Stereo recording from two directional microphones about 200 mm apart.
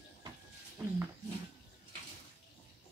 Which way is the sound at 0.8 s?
15° right (ahead or behind).